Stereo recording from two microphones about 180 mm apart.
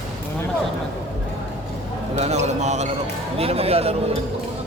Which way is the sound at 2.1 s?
40° right (ahead or behind).